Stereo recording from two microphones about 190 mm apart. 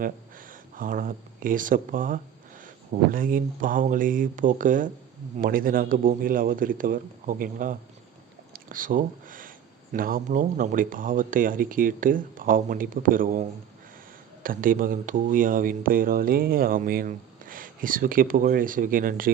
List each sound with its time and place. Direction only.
0.0 s speech: 45° right (ahead or behind)
14.4 s speech: 45° right (ahead or behind)